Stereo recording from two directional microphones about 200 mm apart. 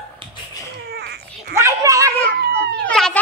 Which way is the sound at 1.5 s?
15° right (ahead or behind).